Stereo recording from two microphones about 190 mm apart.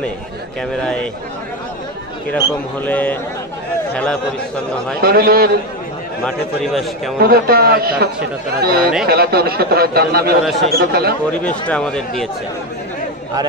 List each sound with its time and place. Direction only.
2.3 s a man's voice: 10° left (ahead or behind)
5.0 s a man's voice: 55° right (ahead or behind)
6.2 s a man's voice: centre (ahead or behind)
7.2 s a man's voice: 55° right (ahead or behind)
11.3 s a man's voice: 5° left (ahead or behind)